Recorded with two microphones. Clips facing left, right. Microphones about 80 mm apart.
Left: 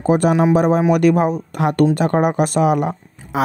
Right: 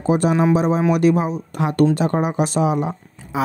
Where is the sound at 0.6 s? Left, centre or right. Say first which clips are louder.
Left 3 dB; left.